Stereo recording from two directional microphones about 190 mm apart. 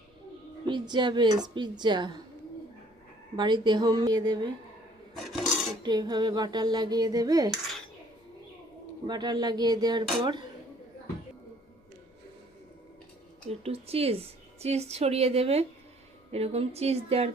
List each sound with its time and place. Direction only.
0.7 s dishes: 25° right (ahead or behind)
3.3 s dishes: 25° right (ahead or behind)
5.8 s dishes: 20° right (ahead or behind)
9.0 s dishes: 20° right (ahead or behind)
13.5 s a woman's voice: 30° right (ahead or behind)